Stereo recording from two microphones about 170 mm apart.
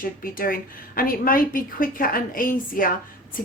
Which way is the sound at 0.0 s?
55° left (ahead or behind).